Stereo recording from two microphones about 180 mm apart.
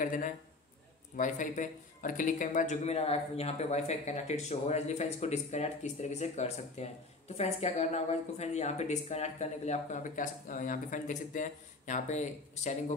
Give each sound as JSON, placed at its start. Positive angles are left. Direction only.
{"t": 0.0, "sound": "a man's voice", "side_deg": 45}